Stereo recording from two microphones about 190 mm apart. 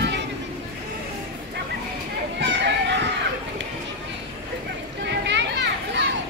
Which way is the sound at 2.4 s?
70° right (ahead or behind).